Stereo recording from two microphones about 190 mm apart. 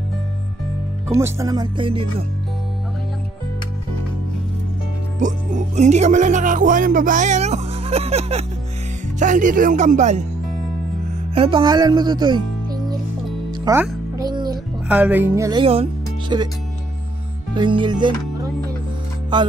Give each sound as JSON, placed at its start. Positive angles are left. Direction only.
{"t": 1.1, "sound": "speech", "side_deg": -15}
{"t": 5.2, "sound": "speech", "side_deg": -40}
{"t": 11.3, "sound": "speech", "side_deg": -25}
{"t": 13.5, "sound": "music", "side_deg": -15}
{"t": 14.9, "sound": "music", "side_deg": -10}
{"t": 15.6, "sound": "speech", "side_deg": -30}
{"t": 17.6, "sound": "music", "side_deg": -25}
{"t": 19.3, "sound": "speech", "side_deg": -25}